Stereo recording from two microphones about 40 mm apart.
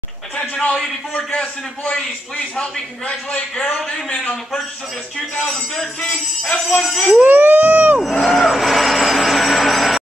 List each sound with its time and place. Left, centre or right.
0.4 s a man's voice: left
1.4 s a man's voice: left
5.9 s a man's voice: left
6.8 s speech: centre
7.2 s a sound: right
8.1 s a sound: centre